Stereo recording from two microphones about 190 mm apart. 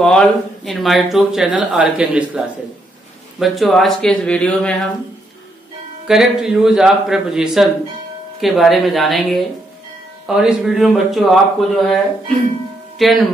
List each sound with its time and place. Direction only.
0.0 s speech: 5° left (ahead or behind)
6.0 s speech: 5° right (ahead or behind)
13.0 s speech: centre (ahead or behind)